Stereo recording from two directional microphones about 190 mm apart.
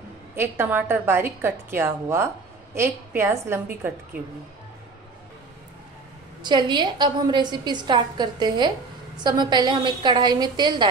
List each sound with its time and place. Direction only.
0.4 s a woman's voice: 10° right (ahead or behind)
6.4 s a woman's voice: 25° right (ahead or behind)